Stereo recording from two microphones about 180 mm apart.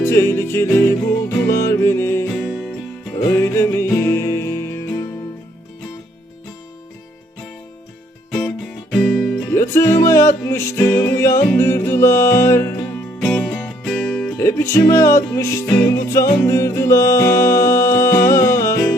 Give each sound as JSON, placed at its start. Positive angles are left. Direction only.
{"t": 0.0, "sound": "music", "side_deg": 15}
{"t": 2.5, "sound": "music", "side_deg": 0}
{"t": 3.2, "sound": "music", "side_deg": 15}
{"t": 8.4, "sound": "music", "side_deg": 5}
{"t": 9.6, "sound": "music", "side_deg": 15}
{"t": 13.1, "sound": "music", "side_deg": 5}
{"t": 14.3, "sound": "music", "side_deg": 15}